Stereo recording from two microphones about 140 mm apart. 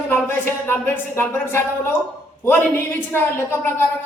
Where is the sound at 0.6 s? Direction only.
15° left (ahead or behind).